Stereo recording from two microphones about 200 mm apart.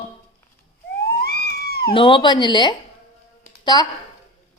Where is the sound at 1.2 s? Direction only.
50° left (ahead or behind).